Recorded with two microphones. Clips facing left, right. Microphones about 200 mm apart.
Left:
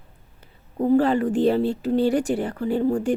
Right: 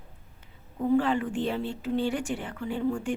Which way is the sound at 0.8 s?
35° left (ahead or behind).